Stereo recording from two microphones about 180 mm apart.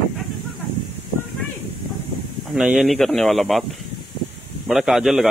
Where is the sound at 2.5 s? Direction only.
Centre (ahead or behind).